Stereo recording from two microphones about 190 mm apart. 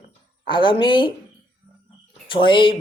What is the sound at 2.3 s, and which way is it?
Speech, 25° left (ahead or behind).